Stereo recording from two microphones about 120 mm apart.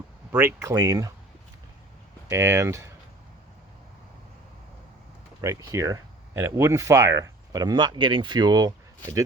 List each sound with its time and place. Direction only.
0.3 s speech: 20° right (ahead or behind)
2.3 s speech: 25° right (ahead or behind)
5.4 s speech: 25° right (ahead or behind)